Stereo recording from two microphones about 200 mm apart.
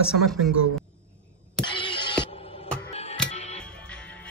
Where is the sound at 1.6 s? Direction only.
25° left (ahead or behind).